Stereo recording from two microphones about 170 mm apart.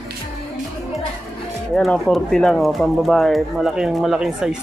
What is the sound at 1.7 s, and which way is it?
Speech, centre (ahead or behind).